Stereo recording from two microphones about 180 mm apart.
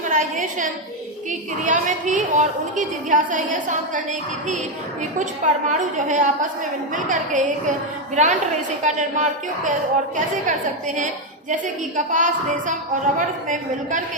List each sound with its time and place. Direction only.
0.1 s a woman's voice: 45° right (ahead or behind)
5.2 s a woman's voice: 45° right (ahead or behind)